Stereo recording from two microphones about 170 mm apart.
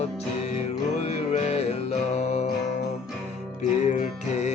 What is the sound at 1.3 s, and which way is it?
Music, 35° left (ahead or behind).